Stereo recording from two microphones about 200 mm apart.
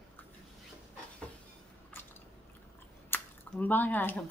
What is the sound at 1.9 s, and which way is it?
Biting, 10° left (ahead or behind).